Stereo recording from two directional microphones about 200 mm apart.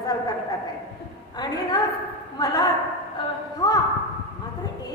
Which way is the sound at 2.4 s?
20° left (ahead or behind).